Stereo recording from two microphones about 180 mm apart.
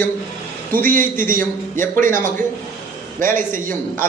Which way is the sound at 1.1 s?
50° right (ahead or behind).